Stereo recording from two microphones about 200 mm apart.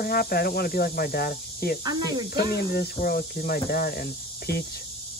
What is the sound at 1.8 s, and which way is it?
Speech, 20° right (ahead or behind).